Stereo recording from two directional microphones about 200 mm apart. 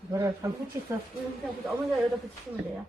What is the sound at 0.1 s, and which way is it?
Speech, 15° right (ahead or behind).